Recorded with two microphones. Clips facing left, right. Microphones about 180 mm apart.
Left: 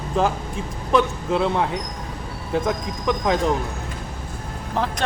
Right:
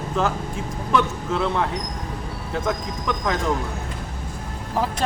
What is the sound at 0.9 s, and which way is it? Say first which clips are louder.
Speech: left 3 dB; 20° left (ahead or behind).